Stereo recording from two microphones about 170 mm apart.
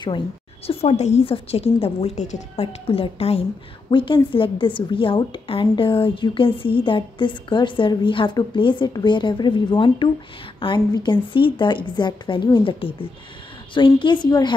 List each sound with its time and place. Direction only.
0.7 s a woman's voice: 40° left (ahead or behind)